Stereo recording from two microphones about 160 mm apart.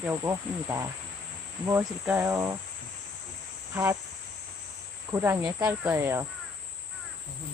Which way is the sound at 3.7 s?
15° right (ahead or behind).